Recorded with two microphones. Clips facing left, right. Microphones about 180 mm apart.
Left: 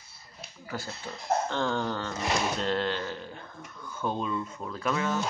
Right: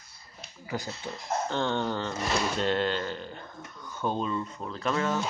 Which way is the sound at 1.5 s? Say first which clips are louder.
Right 1 dB; centre (ahead or behind).